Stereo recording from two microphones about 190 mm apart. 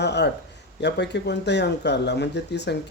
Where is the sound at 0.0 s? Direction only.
65° left (ahead or behind).